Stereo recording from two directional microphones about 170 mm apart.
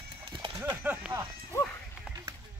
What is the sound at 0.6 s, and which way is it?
Speech, 10° right (ahead or behind).